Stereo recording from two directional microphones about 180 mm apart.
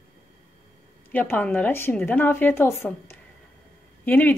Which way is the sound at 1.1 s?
10° left (ahead or behind).